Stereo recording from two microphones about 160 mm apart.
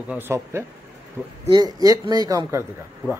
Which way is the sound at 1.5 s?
25° right (ahead or behind).